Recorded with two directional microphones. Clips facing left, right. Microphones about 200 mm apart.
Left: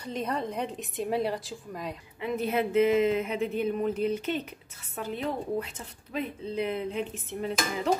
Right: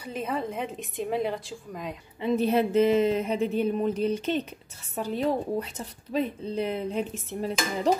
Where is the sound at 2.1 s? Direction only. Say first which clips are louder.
Right 5 dB; 30° right (ahead or behind).